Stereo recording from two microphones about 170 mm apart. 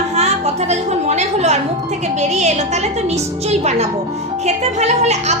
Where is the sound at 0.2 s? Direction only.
40° right (ahead or behind).